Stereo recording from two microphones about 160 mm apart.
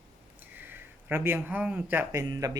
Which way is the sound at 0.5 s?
10° right (ahead or behind).